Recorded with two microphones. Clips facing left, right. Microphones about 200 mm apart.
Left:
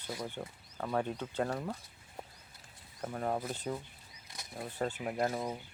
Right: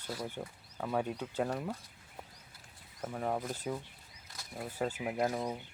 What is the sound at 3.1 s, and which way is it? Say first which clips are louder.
Speech: even; centre (ahead or behind).